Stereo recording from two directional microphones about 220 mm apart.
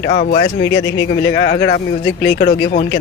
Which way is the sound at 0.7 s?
55° left (ahead or behind).